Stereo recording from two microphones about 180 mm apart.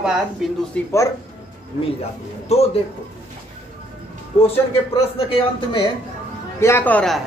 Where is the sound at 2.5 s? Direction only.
35° left (ahead or behind).